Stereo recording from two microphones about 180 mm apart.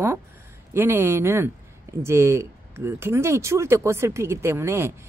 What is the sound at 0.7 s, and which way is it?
Speech, 10° right (ahead or behind).